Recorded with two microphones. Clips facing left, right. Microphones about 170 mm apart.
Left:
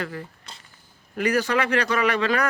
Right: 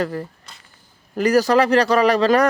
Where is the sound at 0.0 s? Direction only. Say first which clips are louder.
Right 8 dB; 40° right (ahead or behind).